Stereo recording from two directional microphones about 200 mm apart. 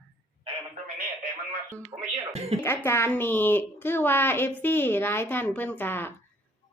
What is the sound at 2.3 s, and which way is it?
Speech, 30° right (ahead or behind).